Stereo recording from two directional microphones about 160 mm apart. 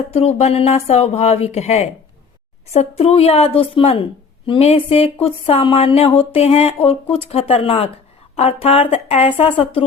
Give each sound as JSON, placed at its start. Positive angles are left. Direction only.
{"t": 0.1, "sound": "speech", "side_deg": 40}